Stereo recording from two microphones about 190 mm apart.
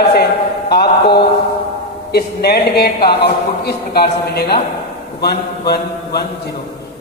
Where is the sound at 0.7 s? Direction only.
55° left (ahead or behind).